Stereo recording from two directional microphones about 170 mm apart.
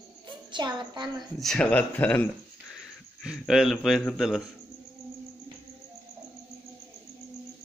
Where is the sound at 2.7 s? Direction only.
Centre (ahead or behind).